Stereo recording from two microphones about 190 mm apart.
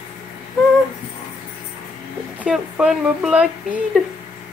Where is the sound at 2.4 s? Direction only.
5° right (ahead or behind).